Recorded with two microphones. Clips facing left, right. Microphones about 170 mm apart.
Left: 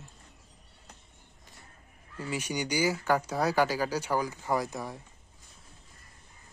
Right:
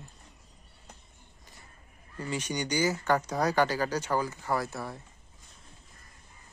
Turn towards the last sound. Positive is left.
turn(degrees=15)  # may be behind; listen again after turning